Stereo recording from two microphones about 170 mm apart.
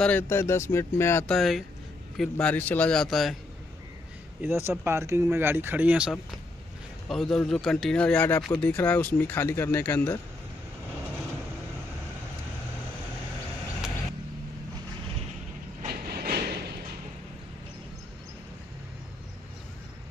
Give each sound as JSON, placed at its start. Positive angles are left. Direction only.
{"t": 0.0, "sound": "speech", "side_deg": 10}
{"t": 1.2, "sound": "speech", "side_deg": 0}
{"t": 4.4, "sound": "speech", "side_deg": -15}
{"t": 15.9, "sound": "train", "side_deg": -65}